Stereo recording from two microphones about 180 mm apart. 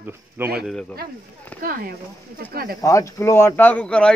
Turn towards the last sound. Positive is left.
turn(degrees=5)  # may be behind; listen again after turning